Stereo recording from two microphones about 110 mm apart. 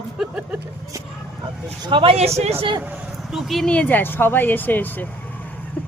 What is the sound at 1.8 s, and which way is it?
Speech, 50° right (ahead or behind).